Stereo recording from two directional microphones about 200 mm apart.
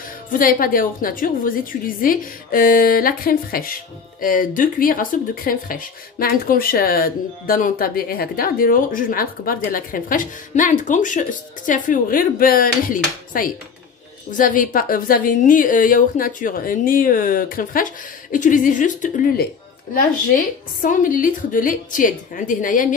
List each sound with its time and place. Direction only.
0.3 s a woman's voice: 45° left (ahead or behind)